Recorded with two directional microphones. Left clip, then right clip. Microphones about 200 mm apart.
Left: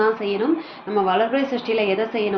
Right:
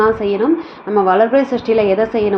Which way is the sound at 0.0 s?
25° right (ahead or behind).